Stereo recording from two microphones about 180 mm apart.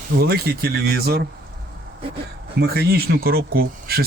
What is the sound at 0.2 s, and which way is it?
Speech, 60° right (ahead or behind).